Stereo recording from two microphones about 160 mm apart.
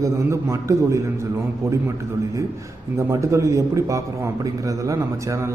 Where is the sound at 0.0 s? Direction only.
20° right (ahead or behind).